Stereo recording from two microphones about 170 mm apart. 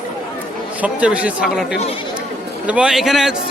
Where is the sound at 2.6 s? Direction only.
5° right (ahead or behind).